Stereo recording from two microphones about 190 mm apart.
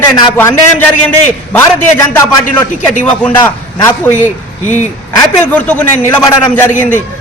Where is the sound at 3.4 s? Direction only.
10° left (ahead or behind).